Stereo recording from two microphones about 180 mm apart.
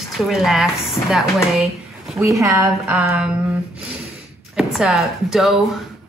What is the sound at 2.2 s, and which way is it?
Speech, 15° right (ahead or behind).